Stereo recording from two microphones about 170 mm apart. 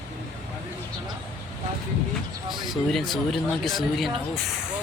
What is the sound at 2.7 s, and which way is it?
Speech, centre (ahead or behind).